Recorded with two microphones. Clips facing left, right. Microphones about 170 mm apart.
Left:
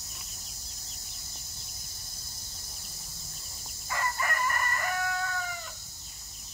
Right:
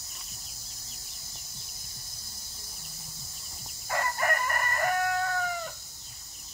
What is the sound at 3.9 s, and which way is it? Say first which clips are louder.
Chicken: right 3 dB; 50° right (ahead or behind).